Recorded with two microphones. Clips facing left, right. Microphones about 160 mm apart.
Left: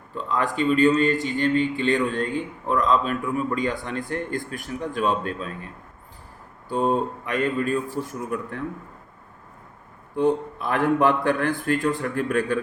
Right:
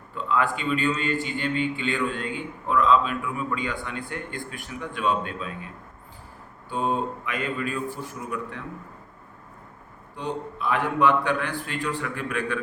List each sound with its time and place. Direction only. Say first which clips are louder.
0.1 s a man's voice: right 1 dB; 40° left (ahead or behind)
6.7 s a man's voice: left 4 dB; 40° left (ahead or behind)
10.2 s a man's voice: left 9 dB; 50° left (ahead or behind)